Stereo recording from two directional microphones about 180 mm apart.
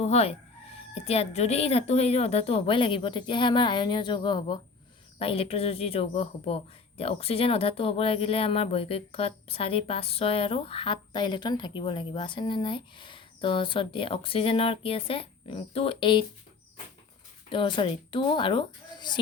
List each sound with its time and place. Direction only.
0.0 s a woman's voice: 35° left (ahead or behind)
17.5 s a woman's voice: 30° left (ahead or behind)